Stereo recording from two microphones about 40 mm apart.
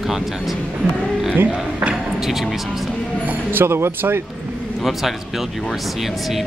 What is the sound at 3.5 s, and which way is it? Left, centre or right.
Speech, right.